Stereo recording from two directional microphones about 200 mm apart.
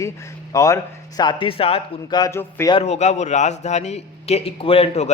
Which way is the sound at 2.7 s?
35° left (ahead or behind).